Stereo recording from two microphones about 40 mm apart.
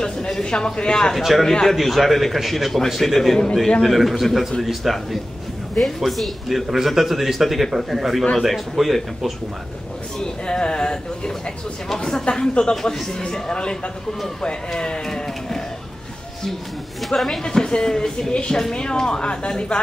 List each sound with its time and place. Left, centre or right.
0.0 s speech: centre
1.1 s a man's voice: centre
10.1 s speech: centre
12.8 s speech: centre
17.1 s speech: centre
17.4 s speech: centre